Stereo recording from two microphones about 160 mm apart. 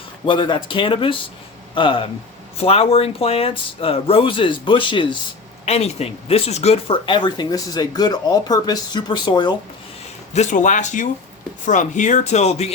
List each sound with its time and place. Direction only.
0.3 s speech: 30° left (ahead or behind)
5.6 s speech: 40° left (ahead or behind)
10.3 s speech: 50° left (ahead or behind)